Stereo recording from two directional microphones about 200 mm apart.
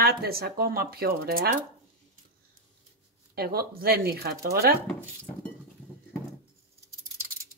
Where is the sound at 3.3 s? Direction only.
50° right (ahead or behind).